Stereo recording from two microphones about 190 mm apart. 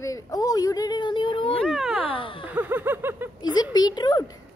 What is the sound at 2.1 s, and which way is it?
Speech, 25° left (ahead or behind).